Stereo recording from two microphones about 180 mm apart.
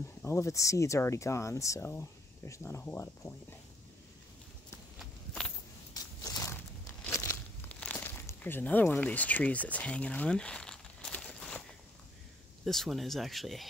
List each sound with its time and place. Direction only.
0.2 s speech: 15° left (ahead or behind)
4.9 s walk: 5° left (ahead or behind)
6.2 s a sound: 20° left (ahead or behind)
7.1 s crumpling: 15° left (ahead or behind)
12.6 s speech: centre (ahead or behind)